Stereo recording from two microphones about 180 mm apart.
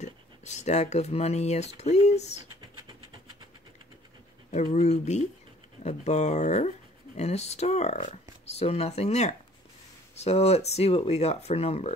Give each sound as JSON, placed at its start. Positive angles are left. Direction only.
{"t": 0.0, "sound": "speech", "side_deg": 40}
{"t": 4.5, "sound": "speech", "side_deg": 35}